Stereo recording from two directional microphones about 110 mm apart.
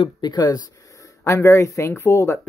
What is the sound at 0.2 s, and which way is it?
Speech, 40° left (ahead or behind).